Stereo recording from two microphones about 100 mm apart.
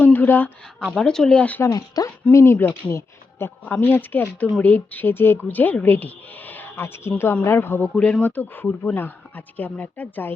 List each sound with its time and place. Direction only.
0.0 s a sound: 20° left (ahead or behind)
0.9 s speech: 5° left (ahead or behind)
1.6 s speech: 35° left (ahead or behind)
7.9 s speech: 10° left (ahead or behind)